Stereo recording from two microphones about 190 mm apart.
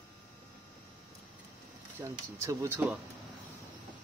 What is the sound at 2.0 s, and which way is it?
Speech, 15° right (ahead or behind).